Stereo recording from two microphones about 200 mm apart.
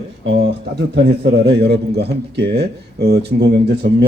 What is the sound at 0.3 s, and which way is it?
Speech, 55° right (ahead or behind).